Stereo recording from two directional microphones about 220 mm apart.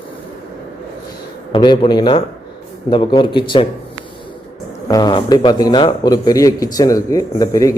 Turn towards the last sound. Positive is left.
turn(degrees=15)  # may be behind; listen again after turning